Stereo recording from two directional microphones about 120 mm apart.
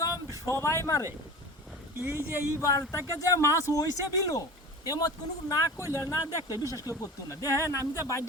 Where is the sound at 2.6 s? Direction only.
25° left (ahead or behind).